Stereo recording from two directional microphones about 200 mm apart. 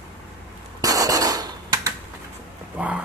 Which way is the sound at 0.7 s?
15° right (ahead or behind).